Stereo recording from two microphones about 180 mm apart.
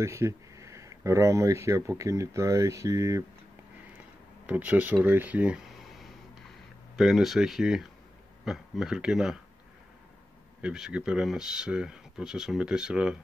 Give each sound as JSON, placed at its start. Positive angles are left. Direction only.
{"t": 0.0, "sound": "speech", "side_deg": -15}
{"t": 4.5, "sound": "speech", "side_deg": -10}
{"t": 10.6, "sound": "speech", "side_deg": -5}